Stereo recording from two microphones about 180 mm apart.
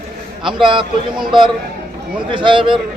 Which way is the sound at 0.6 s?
25° right (ahead or behind).